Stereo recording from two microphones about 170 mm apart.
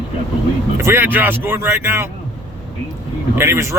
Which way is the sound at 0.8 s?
15° right (ahead or behind).